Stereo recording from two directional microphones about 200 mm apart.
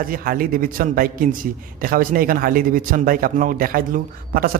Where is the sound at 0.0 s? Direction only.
45° right (ahead or behind).